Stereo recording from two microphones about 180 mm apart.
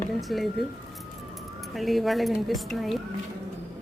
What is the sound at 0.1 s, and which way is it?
Speech, centre (ahead or behind).